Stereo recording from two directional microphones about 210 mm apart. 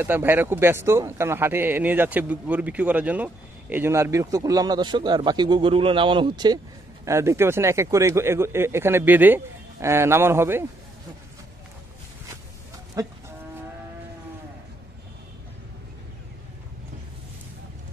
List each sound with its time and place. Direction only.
0.0 s speech: 10° right (ahead or behind)
13.0 s speech: 15° right (ahead or behind)